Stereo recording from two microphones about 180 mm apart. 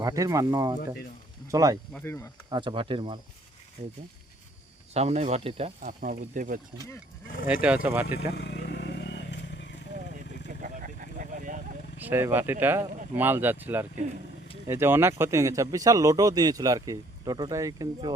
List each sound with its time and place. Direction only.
0.0 s speech: 20° right (ahead or behind)
1.9 s speech: 10° left (ahead or behind)
2.5 s speech: 25° right (ahead or behind)
3.8 s speech: 40° right (ahead or behind)
4.9 s speech: 40° right (ahead or behind)
6.0 s speech: 50° right (ahead or behind)
7.4 s speech: 5° right (ahead or behind)
8.3 s vehicle: 70° left (ahead or behind)
10.6 s a sound: 50° right (ahead or behind)
11.9 s speech: 10° right (ahead or behind)